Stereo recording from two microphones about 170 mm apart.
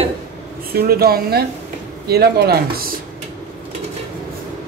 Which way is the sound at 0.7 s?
65° right (ahead or behind).